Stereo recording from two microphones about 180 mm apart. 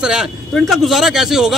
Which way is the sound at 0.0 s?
5° right (ahead or behind).